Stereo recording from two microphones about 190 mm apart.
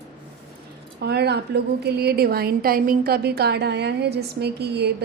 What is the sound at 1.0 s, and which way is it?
A woman's voice, 60° right (ahead or behind).